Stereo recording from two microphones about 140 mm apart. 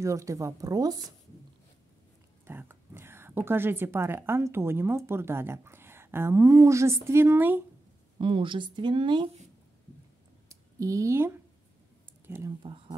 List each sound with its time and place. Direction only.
0.0 s a woman's voice: 20° right (ahead or behind)
2.4 s a woman's voice: 15° right (ahead or behind)
8.2 s speech: 35° right (ahead or behind)
10.5 s speech: 25° right (ahead or behind)
12.6 s speech: 40° right (ahead or behind)